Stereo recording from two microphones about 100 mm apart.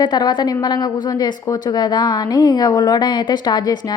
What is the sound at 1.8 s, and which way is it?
A woman's voice, 45° left (ahead or behind).